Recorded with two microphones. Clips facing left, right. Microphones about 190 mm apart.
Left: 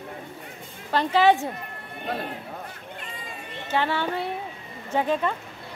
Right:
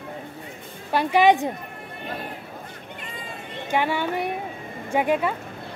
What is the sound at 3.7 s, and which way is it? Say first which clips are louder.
Speech: right 2 dB; 15° right (ahead or behind).